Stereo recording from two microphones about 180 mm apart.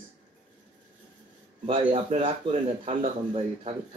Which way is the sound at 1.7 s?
30° right (ahead or behind).